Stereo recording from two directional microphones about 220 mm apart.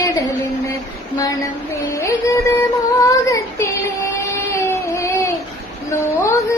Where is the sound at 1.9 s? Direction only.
15° left (ahead or behind).